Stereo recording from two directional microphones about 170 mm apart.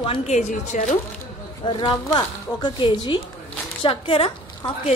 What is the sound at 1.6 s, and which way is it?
A woman's voice, 30° left (ahead or behind).